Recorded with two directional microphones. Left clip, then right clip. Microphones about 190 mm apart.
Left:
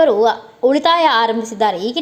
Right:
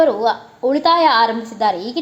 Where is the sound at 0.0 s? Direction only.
30° left (ahead or behind).